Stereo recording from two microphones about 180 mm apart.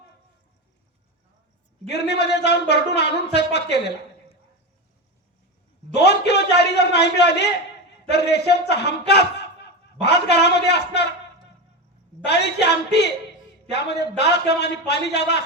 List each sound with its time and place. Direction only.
1.9 s a woman's voice: 70° left (ahead or behind)
5.9 s a woman's voice: 70° left (ahead or behind)
12.2 s a woman's voice: 70° left (ahead or behind)